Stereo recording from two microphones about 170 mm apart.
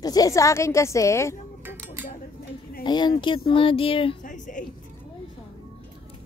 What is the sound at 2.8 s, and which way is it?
Speech, 25° left (ahead or behind).